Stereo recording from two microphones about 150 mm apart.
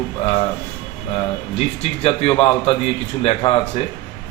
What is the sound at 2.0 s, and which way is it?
A man's voice, 40° left (ahead or behind).